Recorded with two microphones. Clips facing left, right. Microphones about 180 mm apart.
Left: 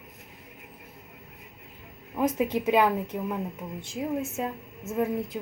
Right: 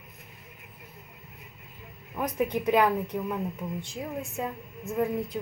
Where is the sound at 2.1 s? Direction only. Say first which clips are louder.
Left 3 dB; 15° left (ahead or behind).